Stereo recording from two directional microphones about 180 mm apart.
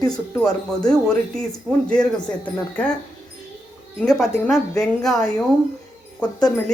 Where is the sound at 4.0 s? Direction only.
5° left (ahead or behind).